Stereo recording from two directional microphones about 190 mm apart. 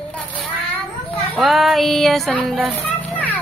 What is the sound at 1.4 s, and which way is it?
A woman's voice, centre (ahead or behind).